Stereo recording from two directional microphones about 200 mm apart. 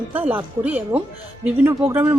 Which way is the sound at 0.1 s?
10° right (ahead or behind).